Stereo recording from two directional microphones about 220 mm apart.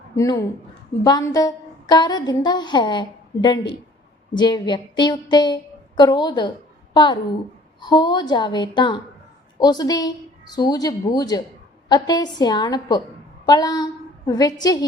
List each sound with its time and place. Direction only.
0.2 s a woman's voice: 15° left (ahead or behind)